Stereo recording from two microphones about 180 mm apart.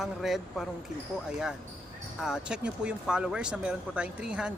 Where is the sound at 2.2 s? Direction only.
5° right (ahead or behind).